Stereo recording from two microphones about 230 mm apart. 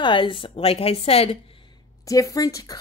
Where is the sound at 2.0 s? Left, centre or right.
Centre.